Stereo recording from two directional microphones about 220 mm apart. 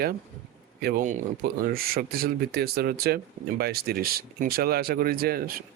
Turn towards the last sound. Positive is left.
turn(degrees=-40)  # may be behind; listen again after turning